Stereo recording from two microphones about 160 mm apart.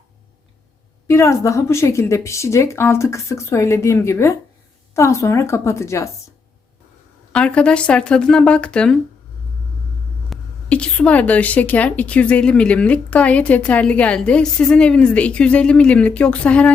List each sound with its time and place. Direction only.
1.0 s a woman's voice: 20° left (ahead or behind)
7.3 s speech: 5° left (ahead or behind)
10.2 s a woman's voice: 5° left (ahead or behind)